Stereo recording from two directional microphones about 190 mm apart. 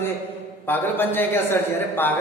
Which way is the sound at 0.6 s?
10° left (ahead or behind).